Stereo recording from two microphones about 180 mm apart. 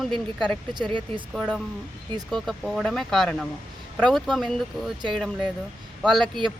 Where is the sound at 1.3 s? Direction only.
Centre (ahead or behind).